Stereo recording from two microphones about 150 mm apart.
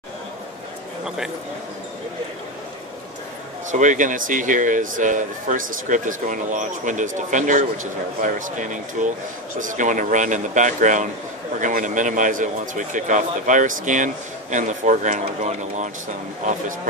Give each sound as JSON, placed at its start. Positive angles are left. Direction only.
{"t": 1.0, "sound": "a man's voice", "side_deg": -5}
{"t": 3.7, "sound": "speech", "side_deg": -55}